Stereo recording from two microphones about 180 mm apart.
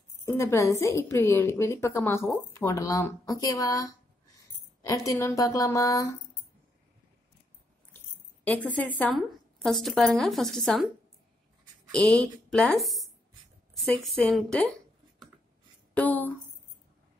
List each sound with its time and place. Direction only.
0.2 s a woman's voice: 15° left (ahead or behind)
8.7 s a woman's voice: 10° left (ahead or behind)
11.9 s a woman's voice: 5° left (ahead or behind)
15.9 s speech: 10° left (ahead or behind)